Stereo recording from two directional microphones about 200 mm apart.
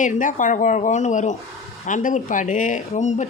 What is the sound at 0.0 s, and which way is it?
Speech, 40° left (ahead or behind).